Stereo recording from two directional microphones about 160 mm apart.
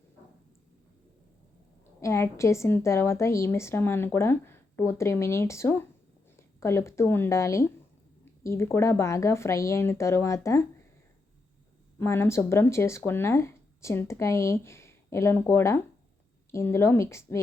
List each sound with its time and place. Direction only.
2.0 s a woman's voice: 15° left (ahead or behind)
11.9 s a woman's voice: 15° left (ahead or behind)